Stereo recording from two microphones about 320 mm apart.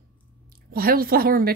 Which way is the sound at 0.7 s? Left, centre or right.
Right.